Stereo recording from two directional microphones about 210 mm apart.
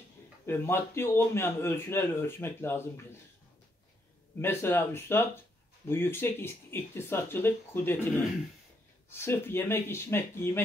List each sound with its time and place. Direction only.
0.5 s a man's voice: 10° left (ahead or behind)
4.4 s a man's voice: 10° left (ahead or behind)
9.1 s a man's voice: 10° left (ahead or behind)